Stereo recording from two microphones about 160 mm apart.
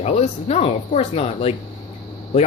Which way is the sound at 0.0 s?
40° left (ahead or behind).